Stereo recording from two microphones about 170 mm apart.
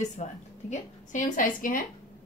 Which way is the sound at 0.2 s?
45° left (ahead or behind).